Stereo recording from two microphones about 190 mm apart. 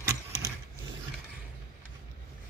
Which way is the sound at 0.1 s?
15° right (ahead or behind).